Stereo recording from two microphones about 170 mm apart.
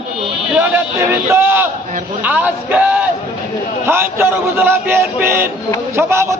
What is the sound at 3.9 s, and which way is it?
A man's voice, 15° right (ahead or behind).